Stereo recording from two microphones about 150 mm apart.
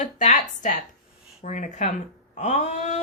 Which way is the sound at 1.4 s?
55° left (ahead or behind).